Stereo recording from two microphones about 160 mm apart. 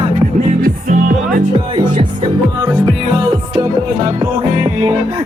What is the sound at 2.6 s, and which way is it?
Music, 25° right (ahead or behind).